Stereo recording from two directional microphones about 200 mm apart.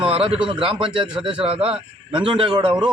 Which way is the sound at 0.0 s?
30° right (ahead or behind).